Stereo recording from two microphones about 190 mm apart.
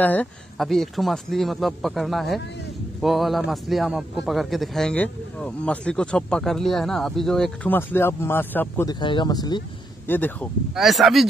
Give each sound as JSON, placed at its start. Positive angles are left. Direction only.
{"t": 0.0, "sound": "speech", "side_deg": 10}
{"t": 9.0, "sound": "speech", "side_deg": 25}
{"t": 10.0, "sound": "speech", "side_deg": 10}
{"t": 10.7, "sound": "speech", "side_deg": 0}